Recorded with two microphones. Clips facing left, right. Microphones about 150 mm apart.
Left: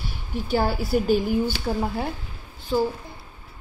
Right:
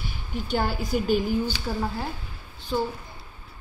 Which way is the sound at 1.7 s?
25° left (ahead or behind).